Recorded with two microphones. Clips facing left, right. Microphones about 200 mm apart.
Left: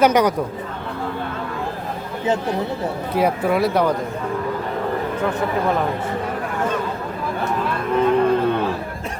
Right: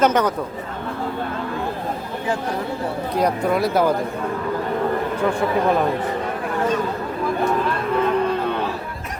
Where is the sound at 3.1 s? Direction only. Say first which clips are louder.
Left 1 dB; 5° left (ahead or behind).